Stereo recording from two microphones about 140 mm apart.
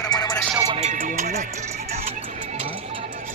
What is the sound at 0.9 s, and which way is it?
Music, 65° right (ahead or behind).